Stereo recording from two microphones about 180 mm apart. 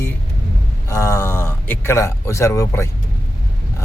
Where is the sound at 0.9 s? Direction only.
15° left (ahead or behind).